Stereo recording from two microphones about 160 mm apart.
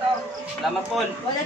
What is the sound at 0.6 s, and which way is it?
Speech, centre (ahead or behind).